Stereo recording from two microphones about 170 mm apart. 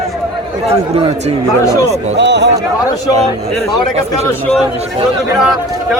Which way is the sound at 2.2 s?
90° right.